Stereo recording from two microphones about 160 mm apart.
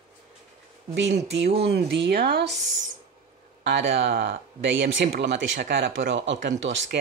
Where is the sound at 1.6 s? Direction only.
90° right.